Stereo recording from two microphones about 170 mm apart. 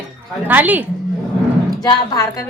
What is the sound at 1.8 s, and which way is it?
Speech, 20° left (ahead or behind).